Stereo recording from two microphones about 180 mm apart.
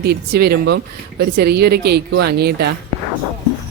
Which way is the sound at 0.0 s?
60° right (ahead or behind).